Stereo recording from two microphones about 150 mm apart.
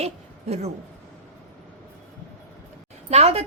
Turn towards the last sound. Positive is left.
turn(degrees=-45)  # may be behind; listen again after turning